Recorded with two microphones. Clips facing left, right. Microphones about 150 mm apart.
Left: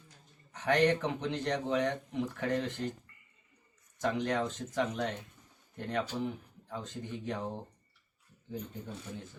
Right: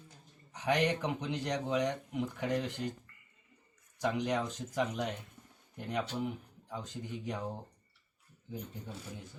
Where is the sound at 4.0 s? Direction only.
15° right (ahead or behind).